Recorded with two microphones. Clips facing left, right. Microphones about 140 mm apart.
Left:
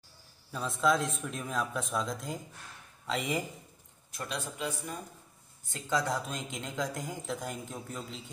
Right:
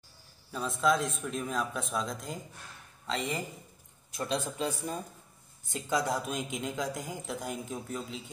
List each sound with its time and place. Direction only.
0.5 s a man's voice: centre (ahead or behind)
4.2 s speech: 30° right (ahead or behind)
5.7 s speech: 15° right (ahead or behind)